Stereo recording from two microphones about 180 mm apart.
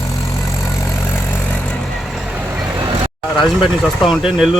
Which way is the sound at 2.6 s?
25° right (ahead or behind).